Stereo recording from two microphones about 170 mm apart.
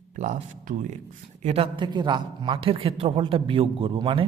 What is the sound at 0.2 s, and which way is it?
A woman's voice, 45° right (ahead or behind).